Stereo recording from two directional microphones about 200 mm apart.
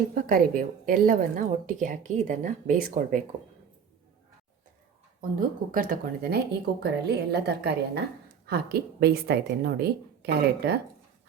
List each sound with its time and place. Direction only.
0.1 s a woman's voice: 45° right (ahead or behind)
5.4 s a woman's voice: 40° right (ahead or behind)